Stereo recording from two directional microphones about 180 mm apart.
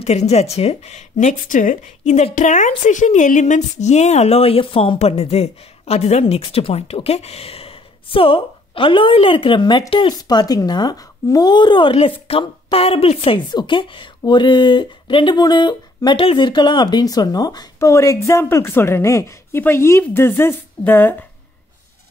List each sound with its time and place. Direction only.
0.0 s a woman's voice: 35° left (ahead or behind); by 21.3 s 10° left (ahead or behind)